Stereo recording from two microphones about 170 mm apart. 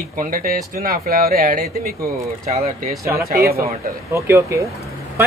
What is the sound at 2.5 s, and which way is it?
Speech, 40° right (ahead or behind).